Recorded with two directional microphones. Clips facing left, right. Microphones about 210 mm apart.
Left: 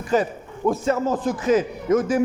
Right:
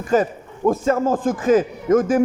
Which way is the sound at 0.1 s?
45° right (ahead or behind).